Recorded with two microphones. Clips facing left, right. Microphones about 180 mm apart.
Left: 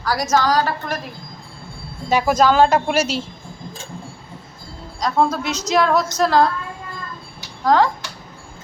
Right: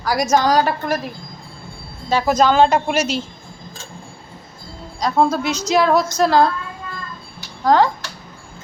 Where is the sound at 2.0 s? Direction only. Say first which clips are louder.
Even; 15° left (ahead or behind).